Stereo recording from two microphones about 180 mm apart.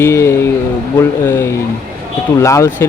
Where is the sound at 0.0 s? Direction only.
15° left (ahead or behind).